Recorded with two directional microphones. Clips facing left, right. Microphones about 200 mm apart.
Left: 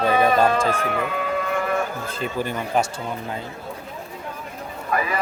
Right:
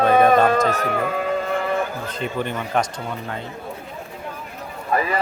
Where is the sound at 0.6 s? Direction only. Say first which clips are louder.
Right 2 dB; 30° left (ahead or behind).